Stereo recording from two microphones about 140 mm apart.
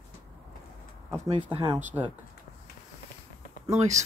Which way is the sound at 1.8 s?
10° right (ahead or behind).